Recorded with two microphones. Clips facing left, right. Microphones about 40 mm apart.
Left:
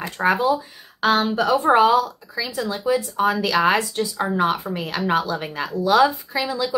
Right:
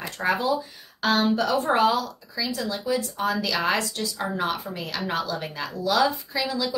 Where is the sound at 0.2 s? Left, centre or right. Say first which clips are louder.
Left 5 dB; centre.